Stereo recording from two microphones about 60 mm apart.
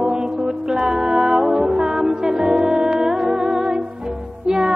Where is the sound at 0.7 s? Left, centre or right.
Centre.